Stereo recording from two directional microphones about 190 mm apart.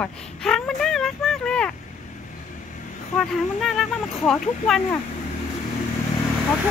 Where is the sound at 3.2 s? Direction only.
Centre (ahead or behind).